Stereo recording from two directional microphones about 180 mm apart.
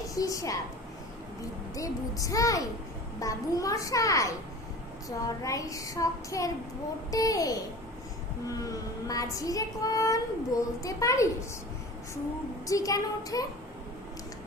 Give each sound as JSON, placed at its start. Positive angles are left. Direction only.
{"t": 0.0, "sound": "a woman's voice", "side_deg": 20}
{"t": 1.7, "sound": "a woman's voice", "side_deg": 20}
{"t": 12.6, "sound": "a woman's voice", "side_deg": 20}